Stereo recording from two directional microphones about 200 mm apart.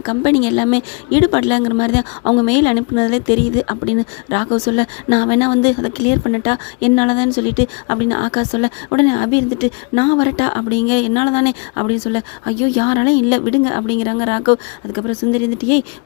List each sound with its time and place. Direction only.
0.0 s speech: 30° left (ahead or behind)